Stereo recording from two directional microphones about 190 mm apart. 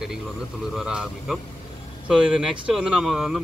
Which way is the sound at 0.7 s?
5° right (ahead or behind).